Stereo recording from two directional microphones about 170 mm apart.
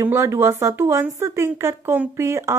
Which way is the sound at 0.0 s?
15° right (ahead or behind).